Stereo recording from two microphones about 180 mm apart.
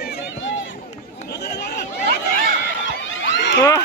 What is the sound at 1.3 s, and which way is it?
Chatter, 65° left (ahead or behind).